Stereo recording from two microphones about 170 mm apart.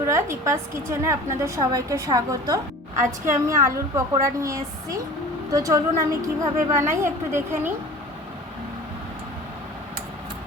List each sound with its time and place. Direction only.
0.1 s a woman's voice: 15° right (ahead or behind)